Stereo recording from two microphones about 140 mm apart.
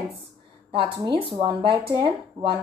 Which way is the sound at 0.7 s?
35° right (ahead or behind).